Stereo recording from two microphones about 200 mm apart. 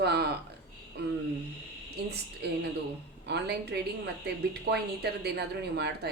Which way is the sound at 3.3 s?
55° right (ahead or behind).